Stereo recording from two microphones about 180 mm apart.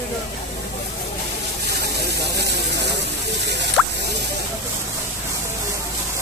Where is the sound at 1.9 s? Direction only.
65° right (ahead or behind).